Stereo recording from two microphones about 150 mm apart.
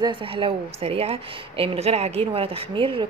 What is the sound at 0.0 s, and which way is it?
A woman's voice, 35° right (ahead or behind).